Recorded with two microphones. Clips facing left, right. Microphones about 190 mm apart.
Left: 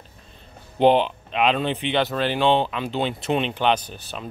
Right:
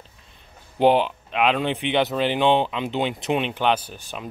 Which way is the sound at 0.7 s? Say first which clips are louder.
Left 1 dB; 10° right (ahead or behind).